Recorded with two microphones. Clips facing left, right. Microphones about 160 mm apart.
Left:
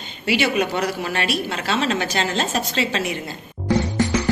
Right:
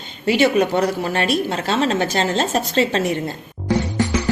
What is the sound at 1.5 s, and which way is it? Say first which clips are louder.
A woman's voice: right 3 dB; 45° right (ahead or behind).